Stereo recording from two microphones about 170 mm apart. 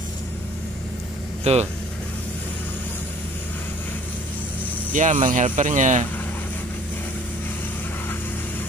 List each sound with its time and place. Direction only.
1.4 s speech: 40° right (ahead or behind)
4.9 s speech: 50° right (ahead or behind)